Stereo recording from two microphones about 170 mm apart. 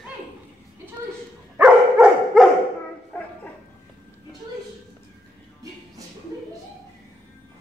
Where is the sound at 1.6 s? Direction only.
Centre (ahead or behind).